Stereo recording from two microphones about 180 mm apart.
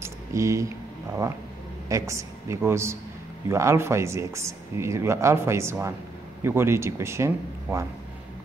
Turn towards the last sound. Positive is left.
turn(degrees=-15)  # may be behind; listen again after turning